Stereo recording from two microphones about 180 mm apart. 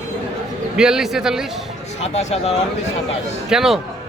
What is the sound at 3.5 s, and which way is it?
Speech, centre (ahead or behind).